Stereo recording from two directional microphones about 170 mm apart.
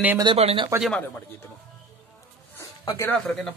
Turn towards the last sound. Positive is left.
turn(degrees=5)  # may be behind; listen again after turning